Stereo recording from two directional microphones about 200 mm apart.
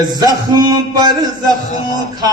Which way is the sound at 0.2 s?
20° right (ahead or behind).